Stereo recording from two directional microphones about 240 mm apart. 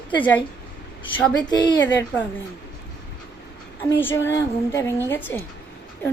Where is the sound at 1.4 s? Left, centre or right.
Centre.